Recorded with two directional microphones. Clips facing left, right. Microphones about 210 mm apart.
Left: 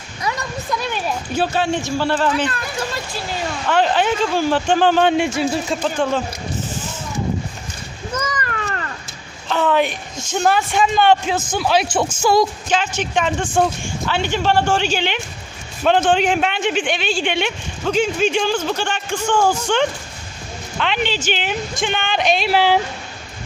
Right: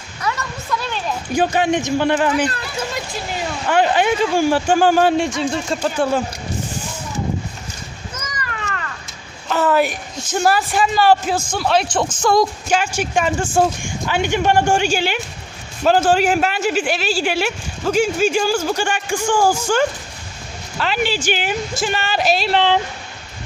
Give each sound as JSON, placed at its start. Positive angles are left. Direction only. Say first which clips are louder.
{"t": 0.2, "sound": "a sound", "louder": "even", "side_deg": 15}
{"t": 1.3, "sound": "speech", "louder": "right 3 dB", "side_deg": -15}
{"t": 3.7, "sound": "a man's voice", "louder": "right 1 dB", "side_deg": -10}
{"t": 5.8, "sound": "speech", "louder": "right 3 dB", "side_deg": -10}
{"t": 8.6, "sound": "cat", "louder": "left 2 dB", "side_deg": 35}
{"t": 9.5, "sound": "a man's voice", "louder": "right 1 dB", "side_deg": -5}
{"t": 12.6, "sound": "a man's voice", "louder": "right 1 dB", "side_deg": -10}